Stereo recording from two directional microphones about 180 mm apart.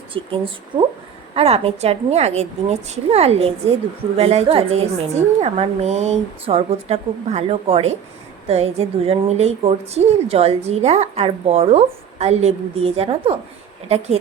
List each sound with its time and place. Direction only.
0.1 s a woman's voice: 30° right (ahead or behind)